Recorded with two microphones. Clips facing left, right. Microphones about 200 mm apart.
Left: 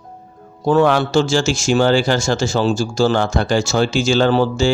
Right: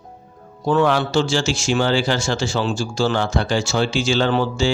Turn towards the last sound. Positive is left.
turn(degrees=40)  # may be behind; listen again after turning